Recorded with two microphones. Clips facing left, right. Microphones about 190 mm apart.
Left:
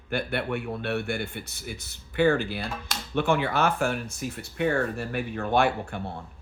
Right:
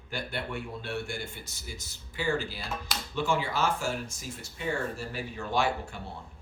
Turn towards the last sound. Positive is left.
turn(degrees=60)  # may be behind; listen again after turning